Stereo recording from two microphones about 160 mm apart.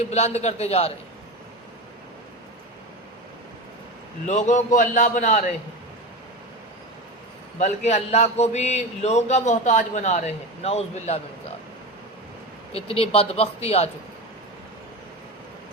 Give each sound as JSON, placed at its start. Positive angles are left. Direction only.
{"t": 0.0, "sound": "speech", "side_deg": 45}
{"t": 4.3, "sound": "a man's voice", "side_deg": 50}
{"t": 7.6, "sound": "a man's voice", "side_deg": 45}
{"t": 12.7, "sound": "speech", "side_deg": 35}